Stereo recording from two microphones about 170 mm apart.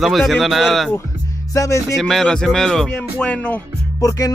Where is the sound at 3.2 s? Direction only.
5° left (ahead or behind).